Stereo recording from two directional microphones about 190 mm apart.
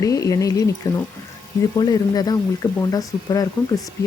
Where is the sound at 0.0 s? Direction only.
15° left (ahead or behind).